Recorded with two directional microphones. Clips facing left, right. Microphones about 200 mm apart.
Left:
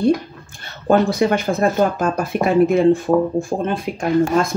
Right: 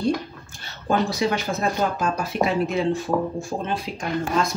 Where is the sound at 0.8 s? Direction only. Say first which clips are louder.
Left 7 dB; 55° left (ahead or behind).